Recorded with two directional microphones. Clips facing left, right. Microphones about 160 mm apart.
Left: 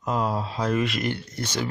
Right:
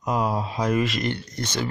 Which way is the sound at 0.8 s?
Centre (ahead or behind).